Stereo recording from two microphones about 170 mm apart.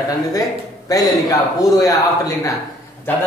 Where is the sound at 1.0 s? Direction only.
Centre (ahead or behind).